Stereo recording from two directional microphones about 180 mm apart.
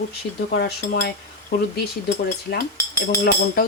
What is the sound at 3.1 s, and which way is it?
Speech, 60° left (ahead or behind).